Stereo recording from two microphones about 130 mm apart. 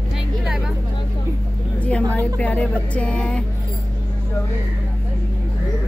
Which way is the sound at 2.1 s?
10° left (ahead or behind).